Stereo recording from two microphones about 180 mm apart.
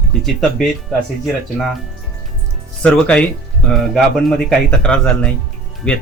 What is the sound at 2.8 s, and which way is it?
Speech, 5° left (ahead or behind).